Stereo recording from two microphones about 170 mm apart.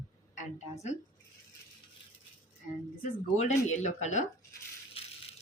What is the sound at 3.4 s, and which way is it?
Speech, 40° left (ahead or behind).